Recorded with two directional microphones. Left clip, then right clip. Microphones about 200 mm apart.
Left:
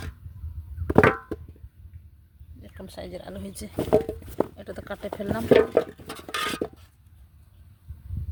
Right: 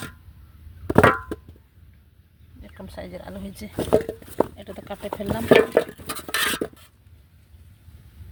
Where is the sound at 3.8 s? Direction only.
15° right (ahead or behind).